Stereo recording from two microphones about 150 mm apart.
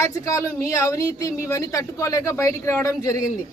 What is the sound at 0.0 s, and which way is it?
Speech, 20° left (ahead or behind).